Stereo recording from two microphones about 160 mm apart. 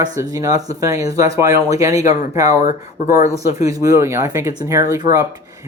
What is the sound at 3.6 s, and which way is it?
Speech, 20° right (ahead or behind).